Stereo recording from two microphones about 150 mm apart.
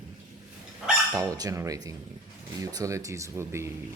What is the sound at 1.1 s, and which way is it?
Speech, 25° right (ahead or behind).